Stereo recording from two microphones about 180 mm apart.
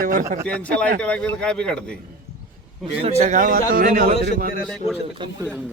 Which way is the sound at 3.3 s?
50° right (ahead or behind).